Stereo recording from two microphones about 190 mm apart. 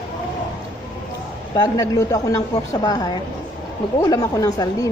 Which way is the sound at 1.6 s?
15° left (ahead or behind).